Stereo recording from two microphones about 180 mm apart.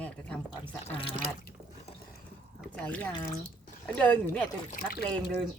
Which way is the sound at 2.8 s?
10° left (ahead or behind).